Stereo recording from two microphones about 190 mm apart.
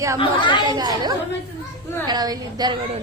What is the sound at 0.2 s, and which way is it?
Speech, 25° left (ahead or behind).